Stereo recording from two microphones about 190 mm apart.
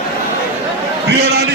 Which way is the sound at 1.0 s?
60° right (ahead or behind).